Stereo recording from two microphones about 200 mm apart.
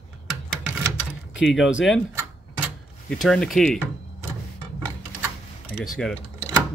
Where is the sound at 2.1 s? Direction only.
10° right (ahead or behind).